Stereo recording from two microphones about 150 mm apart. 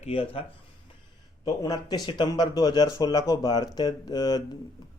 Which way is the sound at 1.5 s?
25° left (ahead or behind).